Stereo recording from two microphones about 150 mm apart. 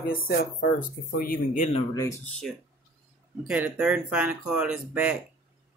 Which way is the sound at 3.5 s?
5° right (ahead or behind).